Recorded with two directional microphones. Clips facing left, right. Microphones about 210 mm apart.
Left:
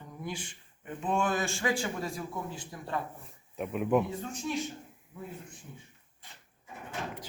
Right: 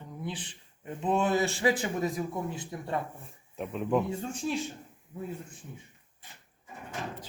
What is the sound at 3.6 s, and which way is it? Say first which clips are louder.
Speech: left 1 dB; 5° left (ahead or behind).